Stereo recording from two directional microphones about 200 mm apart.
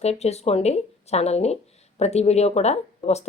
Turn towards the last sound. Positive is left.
turn(degrees=35)  # may be behind; listen again after turning